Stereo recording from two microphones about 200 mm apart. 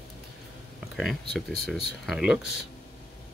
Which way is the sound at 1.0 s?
Centre (ahead or behind).